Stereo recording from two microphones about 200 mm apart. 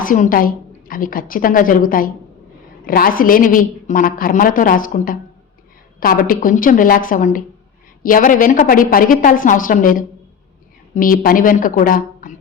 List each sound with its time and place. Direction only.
0.0 s a woman's voice: 45° left (ahead or behind)